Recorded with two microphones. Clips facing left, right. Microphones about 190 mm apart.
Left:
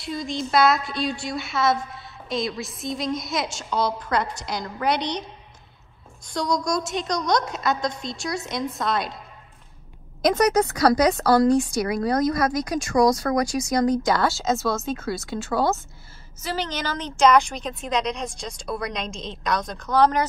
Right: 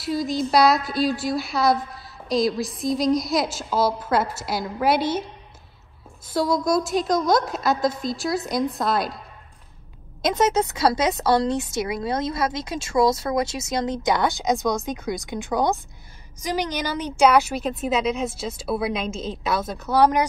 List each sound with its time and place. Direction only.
0.0 s a woman's voice: 5° right (ahead or behind)
6.2 s a woman's voice: 5° right (ahead or behind)
10.2 s a woman's voice: 25° right (ahead or behind)